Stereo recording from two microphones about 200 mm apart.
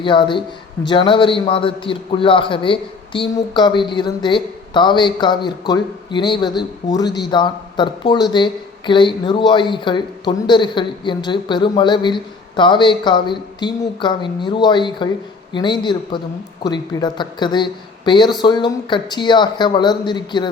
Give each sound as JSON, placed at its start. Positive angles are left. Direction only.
{"t": 0.0, "sound": "a man's voice", "side_deg": 25}